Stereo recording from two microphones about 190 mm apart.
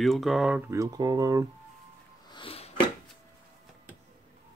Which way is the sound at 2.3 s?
25° left (ahead or behind).